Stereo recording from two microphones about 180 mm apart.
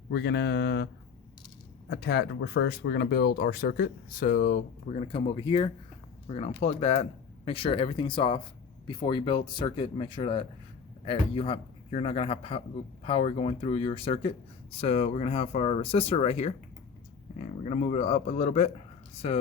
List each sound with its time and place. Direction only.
0.1 s speech: 70° left (ahead or behind)
1.9 s speech: 70° left (ahead or behind); by 19.4 s 35° left (ahead or behind)